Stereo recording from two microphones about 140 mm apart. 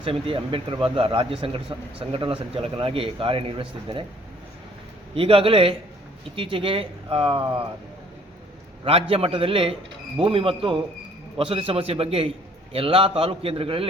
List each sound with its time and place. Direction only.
0.0 s speech: 40° right (ahead or behind)
5.1 s speech: 40° right (ahead or behind)
8.8 s a man's voice: 45° right (ahead or behind)